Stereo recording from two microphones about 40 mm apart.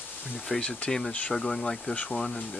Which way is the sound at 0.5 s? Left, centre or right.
Centre.